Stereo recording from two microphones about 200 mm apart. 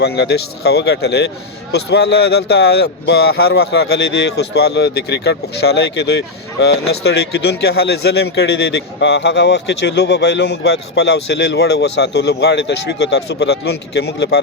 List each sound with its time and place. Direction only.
0.0 s speech: 55° left (ahead or behind)